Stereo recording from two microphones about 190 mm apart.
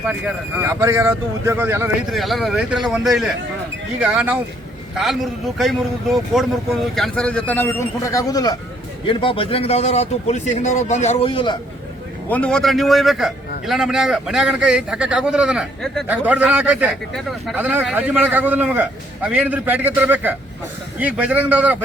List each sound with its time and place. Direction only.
0.1 s a man's voice: 10° right (ahead or behind)
2.1 s a man's voice: centre (ahead or behind); by 11.6 s 25° left (ahead or behind)
12.3 s a man's voice: 5° left (ahead or behind)